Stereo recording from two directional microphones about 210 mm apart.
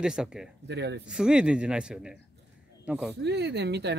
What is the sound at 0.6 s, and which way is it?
Speech, 55° right (ahead or behind).